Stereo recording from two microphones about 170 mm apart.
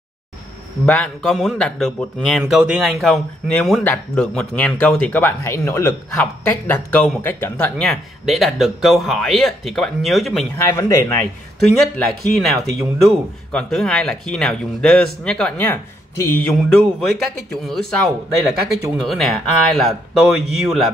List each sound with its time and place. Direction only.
0.8 s speech: 5° left (ahead or behind)
7.8 s speech: centre (ahead or behind)
10.6 s speech: 15° left (ahead or behind)
11.8 s speech: centre (ahead or behind)